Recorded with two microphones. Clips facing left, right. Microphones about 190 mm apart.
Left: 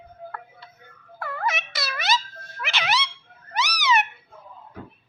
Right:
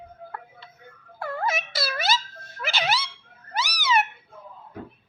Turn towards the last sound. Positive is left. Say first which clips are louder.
# left 1 dB
turn(degrees=-30)  # may be behind; listen again after turning